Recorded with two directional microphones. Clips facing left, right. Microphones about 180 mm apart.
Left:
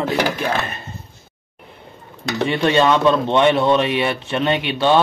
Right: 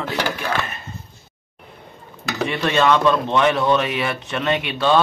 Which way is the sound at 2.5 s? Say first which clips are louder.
Left 2 dB; 25° left (ahead or behind).